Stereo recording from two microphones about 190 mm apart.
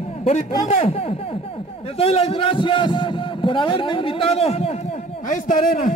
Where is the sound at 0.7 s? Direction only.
35° left (ahead or behind).